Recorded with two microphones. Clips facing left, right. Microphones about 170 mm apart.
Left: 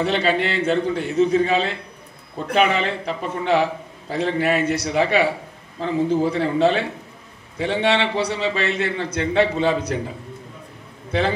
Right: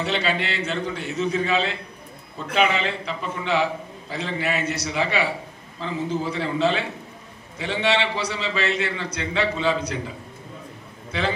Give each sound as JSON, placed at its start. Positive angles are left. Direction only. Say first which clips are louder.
{"t": 0.0, "sound": "a man's voice", "louder": "left 5 dB", "side_deg": 50}
{"t": 6.3, "sound": "a man's voice", "louder": "left 4 dB", "side_deg": 50}
{"t": 11.1, "sound": "a man's voice", "louder": "left 5 dB", "side_deg": 50}